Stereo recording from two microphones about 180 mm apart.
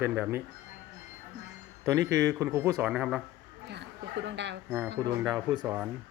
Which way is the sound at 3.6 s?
75° right (ahead or behind).